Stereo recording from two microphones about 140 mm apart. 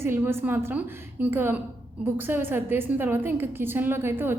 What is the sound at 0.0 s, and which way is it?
A woman's voice, 15° right (ahead or behind).